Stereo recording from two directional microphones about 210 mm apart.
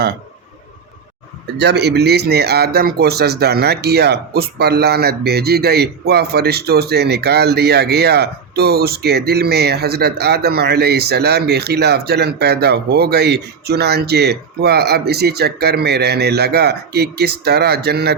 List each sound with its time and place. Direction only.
1.5 s speech: 55° right (ahead or behind)